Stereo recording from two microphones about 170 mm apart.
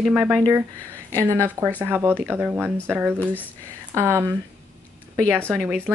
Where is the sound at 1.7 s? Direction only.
10° right (ahead or behind).